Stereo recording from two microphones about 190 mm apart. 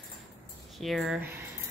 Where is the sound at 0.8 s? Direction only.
Centre (ahead or behind).